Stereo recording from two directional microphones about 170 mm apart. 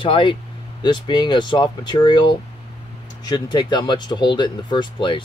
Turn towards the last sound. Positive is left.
turn(degrees=30)  # may be behind; listen again after turning